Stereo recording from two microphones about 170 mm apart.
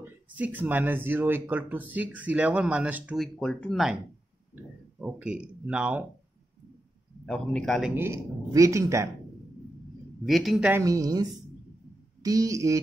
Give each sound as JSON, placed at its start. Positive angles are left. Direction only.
{"t": 0.0, "sound": "speech", "side_deg": -10}
{"t": 3.3, "sound": "speech", "side_deg": 5}
{"t": 5.0, "sound": "speech", "side_deg": -5}
{"t": 7.2, "sound": "speech", "side_deg": 5}
{"t": 7.9, "sound": "speech", "side_deg": -15}
{"t": 10.2, "sound": "speech", "side_deg": 0}
{"t": 10.8, "sound": "speech", "side_deg": -20}